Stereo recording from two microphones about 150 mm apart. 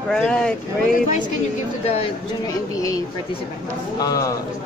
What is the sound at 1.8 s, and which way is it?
Speech, 45° left (ahead or behind).